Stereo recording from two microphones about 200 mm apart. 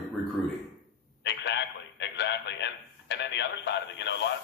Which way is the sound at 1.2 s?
60° left (ahead or behind).